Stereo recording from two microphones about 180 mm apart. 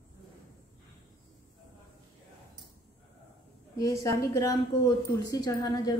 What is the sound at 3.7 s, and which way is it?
A woman's voice, 15° left (ahead or behind).